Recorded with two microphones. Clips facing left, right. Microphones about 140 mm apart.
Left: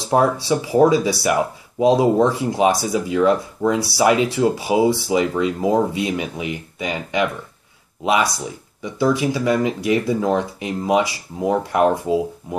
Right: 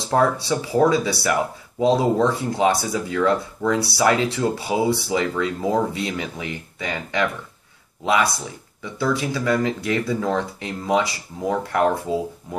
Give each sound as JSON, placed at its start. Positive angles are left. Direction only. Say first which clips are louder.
{"t": 0.1, "sound": "speech", "louder": "left 2 dB", "side_deg": 15}